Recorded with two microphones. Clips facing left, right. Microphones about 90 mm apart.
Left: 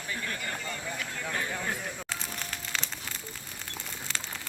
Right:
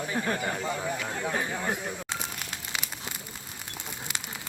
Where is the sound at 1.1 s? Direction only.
20° right (ahead or behind).